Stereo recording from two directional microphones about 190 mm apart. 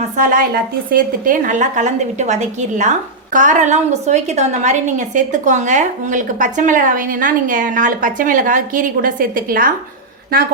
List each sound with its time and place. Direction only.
0.2 s a woman's voice: 50° right (ahead or behind)